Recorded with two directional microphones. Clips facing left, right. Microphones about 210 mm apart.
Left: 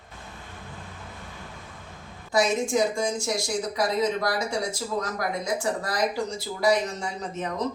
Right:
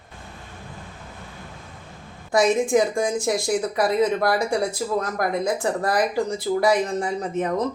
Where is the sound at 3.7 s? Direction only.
55° right (ahead or behind).